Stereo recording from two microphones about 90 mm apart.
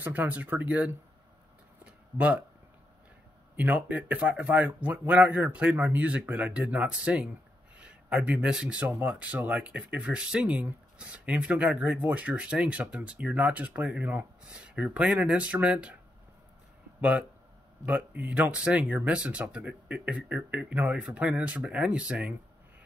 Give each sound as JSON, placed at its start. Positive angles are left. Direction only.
{"t": 0.0, "sound": "speech", "side_deg": -20}
{"t": 1.9, "sound": "a sound", "side_deg": -15}
{"t": 3.5, "sound": "speech", "side_deg": -20}
{"t": 17.8, "sound": "speech", "side_deg": -20}